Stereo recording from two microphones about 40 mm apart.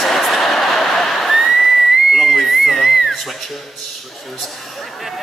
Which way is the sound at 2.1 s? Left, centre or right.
Centre.